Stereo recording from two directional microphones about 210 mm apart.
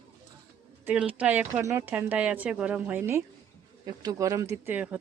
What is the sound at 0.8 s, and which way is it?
Speech, 5° right (ahead or behind).